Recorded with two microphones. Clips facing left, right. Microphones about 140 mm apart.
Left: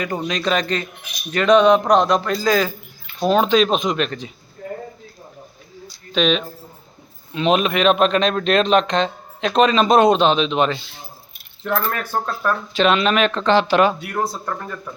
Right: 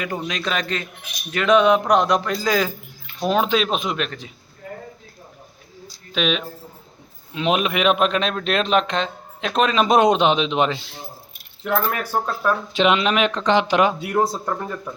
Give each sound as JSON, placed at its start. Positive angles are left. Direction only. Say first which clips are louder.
{"t": 0.3, "sound": "speech", "louder": "left 4 dB", "side_deg": -5}
{"t": 6.1, "sound": "speech", "louder": "left 4 dB", "side_deg": -5}
{"t": 11.6, "sound": "speech", "louder": "even", "side_deg": -10}